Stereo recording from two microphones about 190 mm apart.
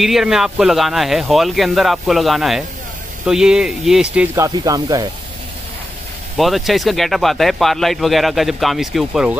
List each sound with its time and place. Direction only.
0.0 s speech: centre (ahead or behind)
4.5 s speech: 20° right (ahead or behind)
6.3 s speech: centre (ahead or behind)